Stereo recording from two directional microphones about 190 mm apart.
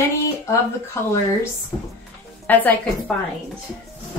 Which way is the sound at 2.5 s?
10° left (ahead or behind).